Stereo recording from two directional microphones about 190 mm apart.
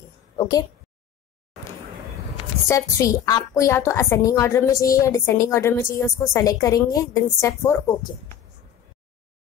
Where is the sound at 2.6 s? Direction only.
15° left (ahead or behind).